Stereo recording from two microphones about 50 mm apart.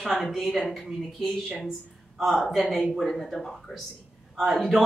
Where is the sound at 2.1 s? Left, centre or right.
Centre.